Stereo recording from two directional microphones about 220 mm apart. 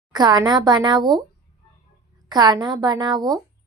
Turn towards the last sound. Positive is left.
turn(degrees=-20)  # may be behind; listen again after turning